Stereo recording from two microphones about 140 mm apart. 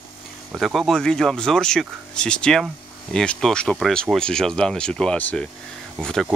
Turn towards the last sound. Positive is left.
turn(degrees=5)  # may be behind; listen again after turning